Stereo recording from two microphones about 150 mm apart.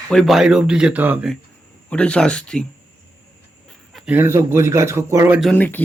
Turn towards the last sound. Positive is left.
turn(degrees=10)  # may be behind; listen again after turning